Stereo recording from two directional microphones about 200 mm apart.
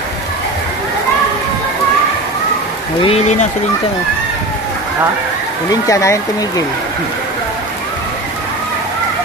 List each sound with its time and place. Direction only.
3.0 s speech: 30° left (ahead or behind)
5.7 s speech: 15° left (ahead or behind)